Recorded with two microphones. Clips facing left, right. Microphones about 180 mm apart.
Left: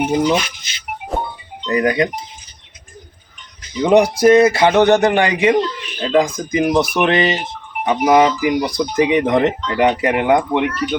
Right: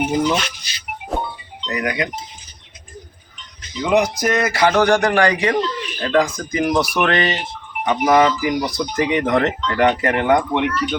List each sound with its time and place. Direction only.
0.2 s speech: 10° left (ahead or behind)
0.7 s music: 20° left (ahead or behind)
1.7 s speech: 30° left (ahead or behind)
3.8 s a man's voice: 30° left (ahead or behind); by 10.7 s 5° left (ahead or behind)